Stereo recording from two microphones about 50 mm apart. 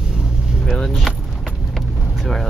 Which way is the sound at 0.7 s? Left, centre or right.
Centre.